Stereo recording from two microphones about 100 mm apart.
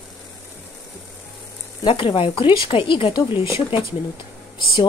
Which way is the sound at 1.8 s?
60° left (ahead or behind).